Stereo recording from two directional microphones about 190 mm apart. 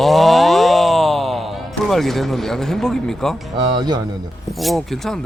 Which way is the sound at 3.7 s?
20° right (ahead or behind).